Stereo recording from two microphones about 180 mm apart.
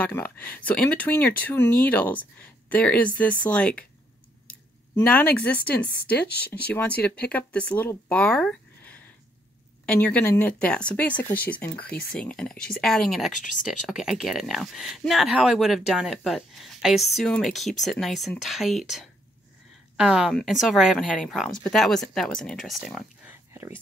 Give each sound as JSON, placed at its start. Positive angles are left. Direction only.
{"t": 0.0, "sound": "speech", "side_deg": 10}
{"t": 5.0, "sound": "speech", "side_deg": 5}
{"t": 6.2, "sound": "speech", "side_deg": 65}
{"t": 7.0, "sound": "speech", "side_deg": 10}
{"t": 8.1, "sound": "a sound", "side_deg": 5}
{"t": 9.8, "sound": "speech", "side_deg": 10}
{"t": 13.3, "sound": "speech", "side_deg": 45}
{"t": 13.7, "sound": "speech", "side_deg": 0}
{"t": 23.5, "sound": "a sound", "side_deg": -10}